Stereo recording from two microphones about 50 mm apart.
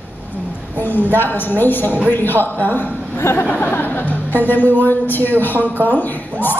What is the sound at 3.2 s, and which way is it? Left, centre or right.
Speech, left.